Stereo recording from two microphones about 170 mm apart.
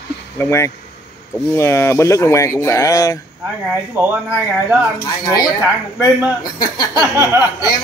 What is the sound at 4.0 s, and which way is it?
Speech, 15° right (ahead or behind).